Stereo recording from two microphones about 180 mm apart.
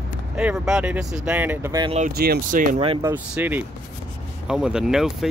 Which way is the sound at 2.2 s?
60° right (ahead or behind).